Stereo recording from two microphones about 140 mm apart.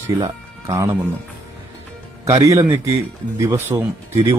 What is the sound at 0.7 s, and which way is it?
Speech, 20° right (ahead or behind).